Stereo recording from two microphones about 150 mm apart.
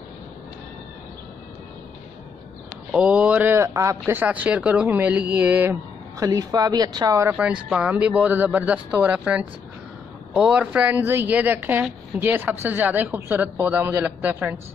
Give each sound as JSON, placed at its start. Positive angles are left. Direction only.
{"t": 2.9, "sound": "a man's voice", "side_deg": -10}
{"t": 7.3, "sound": "a man's voice", "side_deg": -5}